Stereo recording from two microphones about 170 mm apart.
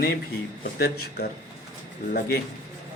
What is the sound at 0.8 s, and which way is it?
Speech, 65° left (ahead or behind).